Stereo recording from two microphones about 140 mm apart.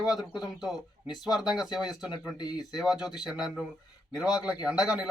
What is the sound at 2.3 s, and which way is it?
Speech, 30° left (ahead or behind).